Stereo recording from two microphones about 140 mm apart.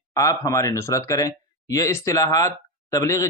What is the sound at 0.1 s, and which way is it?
Speech, 25° left (ahead or behind).